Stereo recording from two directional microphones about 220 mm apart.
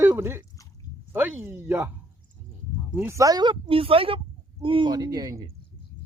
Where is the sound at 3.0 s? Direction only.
15° right (ahead or behind).